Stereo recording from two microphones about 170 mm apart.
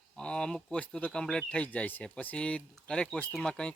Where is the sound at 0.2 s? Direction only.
5° left (ahead or behind).